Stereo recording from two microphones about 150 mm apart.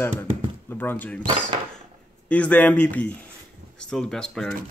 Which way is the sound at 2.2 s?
10° left (ahead or behind).